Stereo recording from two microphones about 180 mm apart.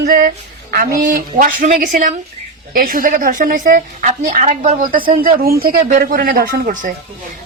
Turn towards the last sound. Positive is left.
turn(degrees=-45)  # may be behind; listen again after turning